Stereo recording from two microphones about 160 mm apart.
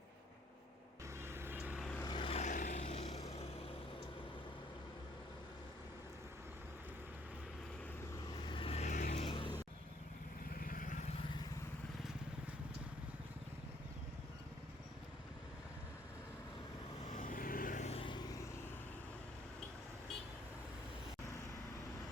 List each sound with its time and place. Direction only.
1.2 s vehicle: 15° right (ahead or behind)
1.8 s vehicle: 10° left (ahead or behind)
2.0 s vehicle: 30° left (ahead or behind)
2.4 s vehicle: 50° left (ahead or behind)
8.3 s vehicle: 30° left (ahead or behind); by 9.2 s 50° left (ahead or behind)
9.2 s vehicle: 35° left (ahead or behind)
10.6 s vehicle: 60° left (ahead or behind)
17.1 s vehicle: 55° left (ahead or behind); by 18.4 s 25° left (ahead or behind)